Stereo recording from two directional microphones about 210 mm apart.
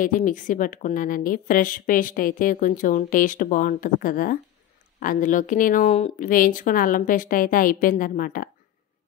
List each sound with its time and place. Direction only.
0.0 s a woman's voice: 40° left (ahead or behind)